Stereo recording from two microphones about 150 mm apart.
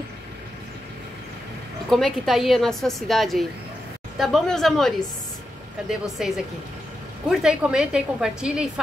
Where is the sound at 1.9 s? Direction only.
Centre (ahead or behind).